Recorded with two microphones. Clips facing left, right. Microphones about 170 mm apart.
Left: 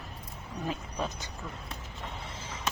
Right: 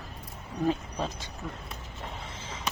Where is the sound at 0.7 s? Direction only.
30° right (ahead or behind).